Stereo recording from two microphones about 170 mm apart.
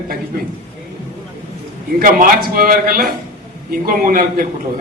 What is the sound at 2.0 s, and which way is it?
A man's voice, 55° right (ahead or behind).